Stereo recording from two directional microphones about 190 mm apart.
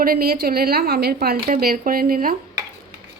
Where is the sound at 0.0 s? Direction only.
50° right (ahead or behind).